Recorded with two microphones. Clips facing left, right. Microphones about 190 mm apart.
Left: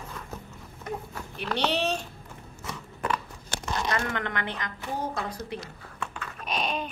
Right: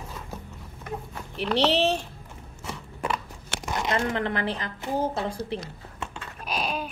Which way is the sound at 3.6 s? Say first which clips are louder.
Right 3 dB; 20° right (ahead or behind).